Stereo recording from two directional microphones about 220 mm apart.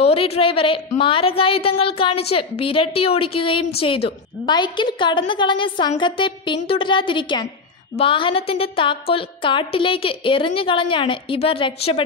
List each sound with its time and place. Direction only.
0.0 s a woman's voice: 25° left (ahead or behind)